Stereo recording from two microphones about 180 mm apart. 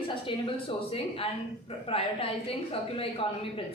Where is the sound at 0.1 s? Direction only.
30° left (ahead or behind).